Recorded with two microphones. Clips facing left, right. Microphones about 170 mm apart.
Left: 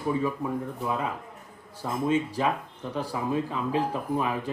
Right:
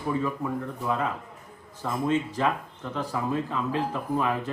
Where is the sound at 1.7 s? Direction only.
10° left (ahead or behind).